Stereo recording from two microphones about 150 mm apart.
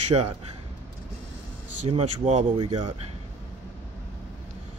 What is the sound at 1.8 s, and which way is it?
Speech, 45° right (ahead or behind).